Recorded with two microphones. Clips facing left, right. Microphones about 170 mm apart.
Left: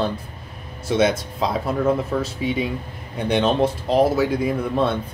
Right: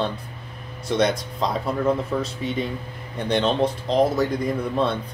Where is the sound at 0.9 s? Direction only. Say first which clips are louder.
Left 2 dB; 5° left (ahead or behind).